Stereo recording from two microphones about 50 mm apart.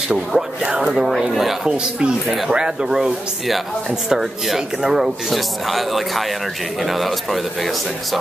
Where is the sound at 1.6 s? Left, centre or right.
Centre.